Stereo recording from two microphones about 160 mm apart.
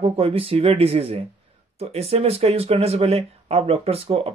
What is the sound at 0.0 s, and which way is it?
Speech, 35° right (ahead or behind).